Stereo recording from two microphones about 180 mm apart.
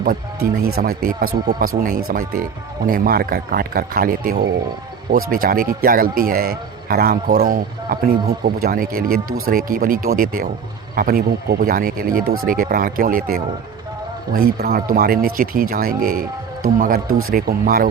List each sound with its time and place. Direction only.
0.6 s speech: 55° right (ahead or behind)